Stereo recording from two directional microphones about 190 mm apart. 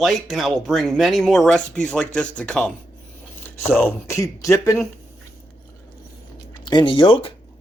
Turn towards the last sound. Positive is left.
turn(degrees=25)  # may be behind; listen again after turning